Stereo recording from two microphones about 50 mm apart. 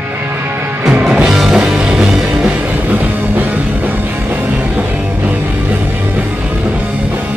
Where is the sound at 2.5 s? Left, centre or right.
Right.